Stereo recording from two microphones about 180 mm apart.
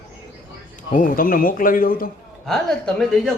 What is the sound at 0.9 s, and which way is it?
Speech, 50° left (ahead or behind).